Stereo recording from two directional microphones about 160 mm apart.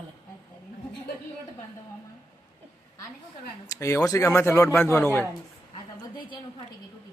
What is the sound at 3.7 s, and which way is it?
Speech, 20° left (ahead or behind).